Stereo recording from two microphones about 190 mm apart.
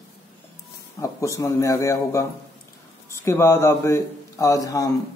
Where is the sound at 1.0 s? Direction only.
15° left (ahead or behind).